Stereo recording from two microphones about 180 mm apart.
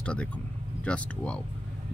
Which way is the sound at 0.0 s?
5° left (ahead or behind).